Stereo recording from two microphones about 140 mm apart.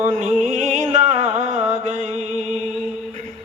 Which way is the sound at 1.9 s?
55° right (ahead or behind).